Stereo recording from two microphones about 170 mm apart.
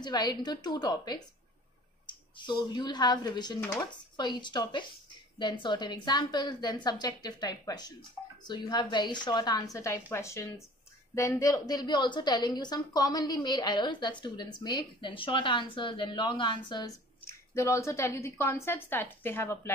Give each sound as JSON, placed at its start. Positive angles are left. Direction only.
{"t": 0.0, "sound": "a woman's voice", "side_deg": 25}